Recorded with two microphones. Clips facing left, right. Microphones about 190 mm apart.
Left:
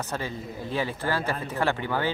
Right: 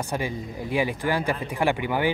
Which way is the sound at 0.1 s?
15° right (ahead or behind).